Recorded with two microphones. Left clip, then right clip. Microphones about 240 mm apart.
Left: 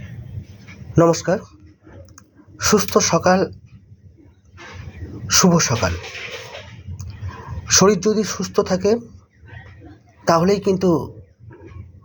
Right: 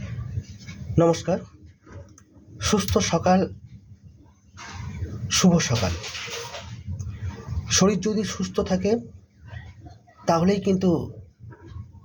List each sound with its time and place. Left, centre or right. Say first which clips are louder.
0.9 s speech: left 5 dB; centre
2.6 s speech: left 7 dB; centre
5.3 s a man's voice: left 6 dB; centre
7.7 s speech: left 7 dB; centre
9.8 s a sound: left 5 dB; right
10.2 s speech: left 6 dB; centre